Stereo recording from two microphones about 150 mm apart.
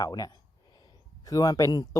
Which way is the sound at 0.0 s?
25° left (ahead or behind).